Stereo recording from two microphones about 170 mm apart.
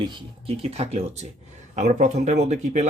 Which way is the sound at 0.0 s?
30° right (ahead or behind).